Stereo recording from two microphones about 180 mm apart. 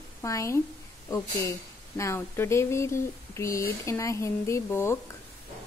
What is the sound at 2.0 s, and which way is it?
Speech, 15° left (ahead or behind).